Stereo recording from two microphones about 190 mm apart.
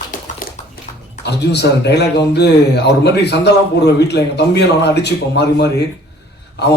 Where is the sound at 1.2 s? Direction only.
60° left (ahead or behind).